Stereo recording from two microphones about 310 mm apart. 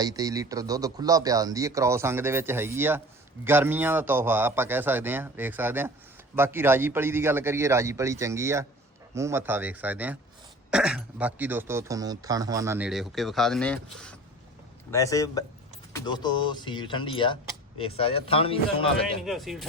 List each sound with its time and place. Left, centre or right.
0.0 s speech: centre
19.2 s speech: centre